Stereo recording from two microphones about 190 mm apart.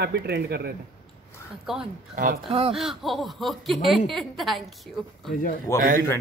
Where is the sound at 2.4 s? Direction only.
30° right (ahead or behind).